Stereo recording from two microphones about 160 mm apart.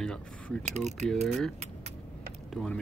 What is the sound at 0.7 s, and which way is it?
Speech, 45° right (ahead or behind).